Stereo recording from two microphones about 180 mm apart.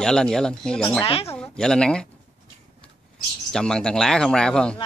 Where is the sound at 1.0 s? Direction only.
30° left (ahead or behind).